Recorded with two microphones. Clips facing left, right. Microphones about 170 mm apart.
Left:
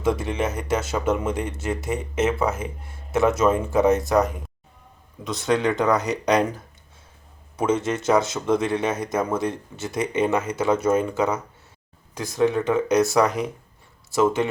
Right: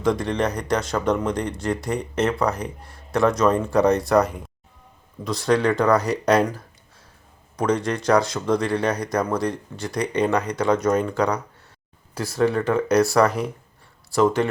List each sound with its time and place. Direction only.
0.0 s speech: 5° left (ahead or behind)
7.5 s a man's voice: 5° left (ahead or behind)
12.5 s speech: centre (ahead or behind)